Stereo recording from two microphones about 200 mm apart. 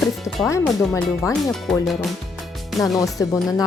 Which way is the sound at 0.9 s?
15° left (ahead or behind).